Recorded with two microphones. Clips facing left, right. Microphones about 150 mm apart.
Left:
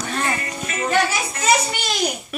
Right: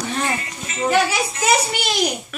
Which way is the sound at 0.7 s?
60° left (ahead or behind).